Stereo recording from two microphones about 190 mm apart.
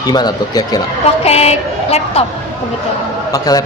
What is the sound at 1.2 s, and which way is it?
A woman's voice, 35° left (ahead or behind).